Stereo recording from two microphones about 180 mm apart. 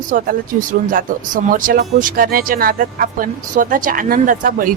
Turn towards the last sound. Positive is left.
turn(degrees=-50)  # may be behind; listen again after turning